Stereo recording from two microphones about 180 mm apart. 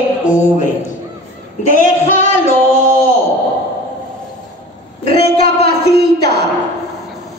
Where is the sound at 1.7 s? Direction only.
40° left (ahead or behind).